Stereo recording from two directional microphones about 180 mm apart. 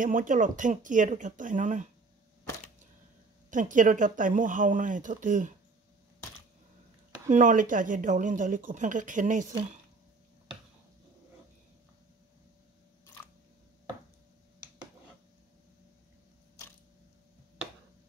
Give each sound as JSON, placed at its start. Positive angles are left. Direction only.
{"t": 0.0, "sound": "speech", "side_deg": -45}
{"t": 3.4, "sound": "speech", "side_deg": -45}
{"t": 7.2, "sound": "speech", "side_deg": -45}